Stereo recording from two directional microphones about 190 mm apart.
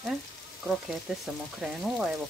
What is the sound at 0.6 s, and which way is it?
Speech, centre (ahead or behind).